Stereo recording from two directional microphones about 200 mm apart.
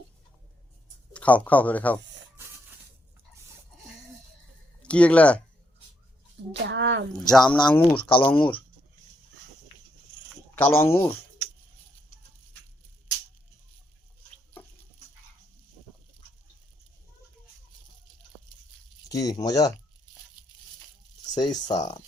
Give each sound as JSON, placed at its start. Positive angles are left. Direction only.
{"t": 1.1, "sound": "speech", "side_deg": 5}
{"t": 4.8, "sound": "speech", "side_deg": 5}
{"t": 6.5, "sound": "speech", "side_deg": -65}
{"t": 7.1, "sound": "speech", "side_deg": 5}
{"t": 7.9, "sound": "speech", "side_deg": 25}
{"t": 10.5, "sound": "speech", "side_deg": 10}
{"t": 19.0, "sound": "speech", "side_deg": 15}
{"t": 21.3, "sound": "speech", "side_deg": 20}